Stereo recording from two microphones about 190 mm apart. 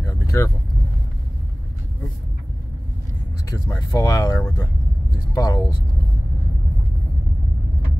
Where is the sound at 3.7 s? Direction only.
15° left (ahead or behind).